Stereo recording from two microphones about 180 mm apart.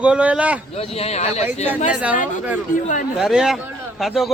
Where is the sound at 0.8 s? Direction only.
35° left (ahead or behind).